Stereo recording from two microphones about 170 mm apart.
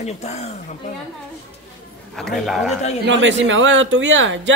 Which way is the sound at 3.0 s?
90° right.